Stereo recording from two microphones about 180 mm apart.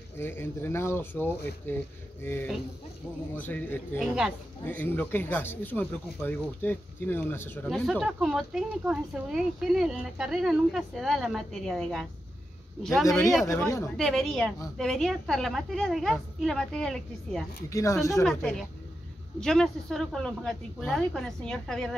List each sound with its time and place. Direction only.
0.2 s speech: 10° left (ahead or behind)
3.3 s speech: 10° left (ahead or behind)
4.0 s speech: 5° right (ahead or behind)
4.6 s speech: 10° left (ahead or behind)
7.6 s speech: centre (ahead or behind)
13.4 s speech: 15° left (ahead or behind)
13.9 s speech: centre (ahead or behind)
17.6 s speech: 15° left (ahead or behind)
18.2 s speech: centre (ahead or behind)